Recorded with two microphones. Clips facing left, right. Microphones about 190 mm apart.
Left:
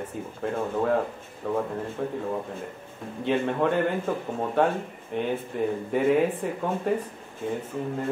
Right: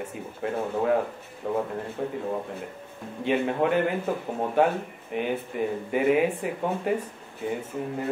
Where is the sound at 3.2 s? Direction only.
5° right (ahead or behind).